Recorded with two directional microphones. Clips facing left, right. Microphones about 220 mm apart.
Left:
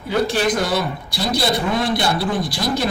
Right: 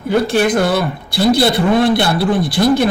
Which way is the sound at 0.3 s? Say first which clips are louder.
Right 6 dB; 55° right (ahead or behind).